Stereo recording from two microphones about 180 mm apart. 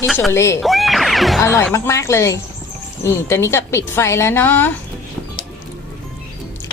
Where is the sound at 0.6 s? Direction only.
Centre (ahead or behind).